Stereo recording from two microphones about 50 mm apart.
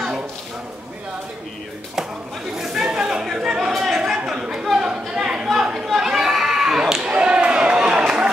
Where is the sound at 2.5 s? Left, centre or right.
Centre.